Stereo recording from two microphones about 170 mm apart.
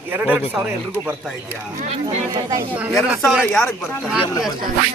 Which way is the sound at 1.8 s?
40° right (ahead or behind).